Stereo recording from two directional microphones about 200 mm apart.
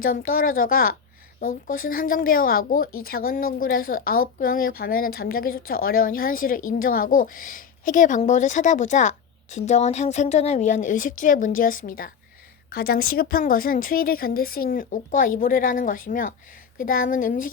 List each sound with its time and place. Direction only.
0.0 s a woman's voice: 45° left (ahead or behind)